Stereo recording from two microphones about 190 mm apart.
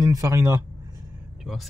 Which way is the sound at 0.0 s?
15° right (ahead or behind).